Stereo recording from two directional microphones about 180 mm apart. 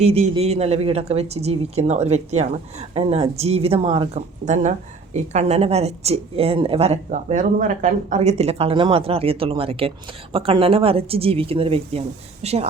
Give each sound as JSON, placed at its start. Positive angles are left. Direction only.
{"t": 0.0, "sound": "speech", "side_deg": -35}